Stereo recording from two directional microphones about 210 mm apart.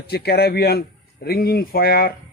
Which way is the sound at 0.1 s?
50° left (ahead or behind).